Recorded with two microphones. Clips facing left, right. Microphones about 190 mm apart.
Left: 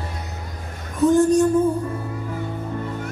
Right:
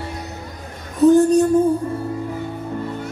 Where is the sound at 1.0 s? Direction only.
35° right (ahead or behind).